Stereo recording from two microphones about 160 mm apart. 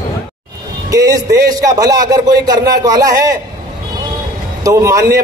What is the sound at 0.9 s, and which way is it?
A man's voice, 20° right (ahead or behind).